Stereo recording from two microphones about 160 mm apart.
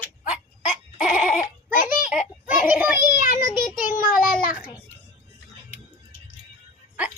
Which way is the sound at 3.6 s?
60° left (ahead or behind).